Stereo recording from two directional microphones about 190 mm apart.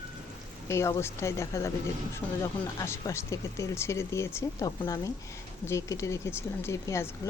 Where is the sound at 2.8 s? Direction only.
15° left (ahead or behind).